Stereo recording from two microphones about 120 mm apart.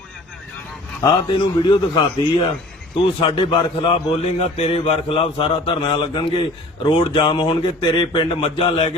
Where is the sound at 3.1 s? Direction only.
40° left (ahead or behind).